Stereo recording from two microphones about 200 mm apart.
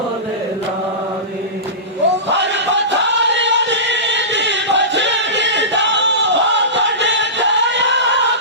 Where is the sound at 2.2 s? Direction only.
60° right (ahead or behind).